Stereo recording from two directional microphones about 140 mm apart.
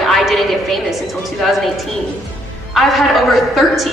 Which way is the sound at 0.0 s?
Centre (ahead or behind).